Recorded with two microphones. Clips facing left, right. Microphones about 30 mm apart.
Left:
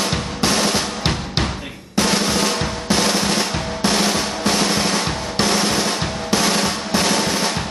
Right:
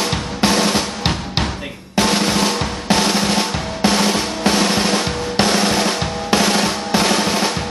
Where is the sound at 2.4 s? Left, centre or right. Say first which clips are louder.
Right 2 dB; centre.